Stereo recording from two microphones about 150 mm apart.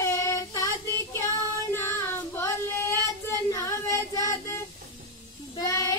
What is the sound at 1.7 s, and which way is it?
Child singing, 20° left (ahead or behind).